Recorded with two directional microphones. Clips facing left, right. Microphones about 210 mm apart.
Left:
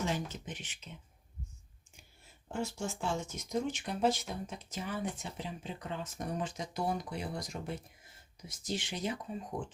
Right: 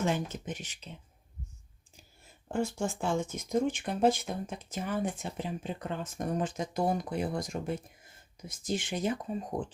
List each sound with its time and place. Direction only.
0.0 s speech: 50° right (ahead or behind)
2.5 s speech: 55° right (ahead or behind)